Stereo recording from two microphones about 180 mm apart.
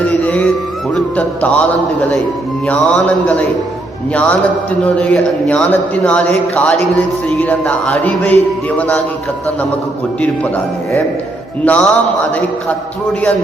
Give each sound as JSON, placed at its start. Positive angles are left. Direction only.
{"t": 0.0, "sound": "music", "side_deg": 10}
{"t": 0.9, "sound": "a man's voice", "side_deg": 10}
{"t": 11.6, "sound": "a man's voice", "side_deg": 5}